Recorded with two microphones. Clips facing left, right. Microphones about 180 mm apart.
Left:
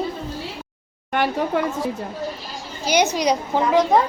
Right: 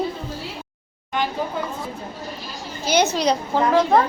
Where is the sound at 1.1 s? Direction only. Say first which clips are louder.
Left 4 dB; 70° left (ahead or behind).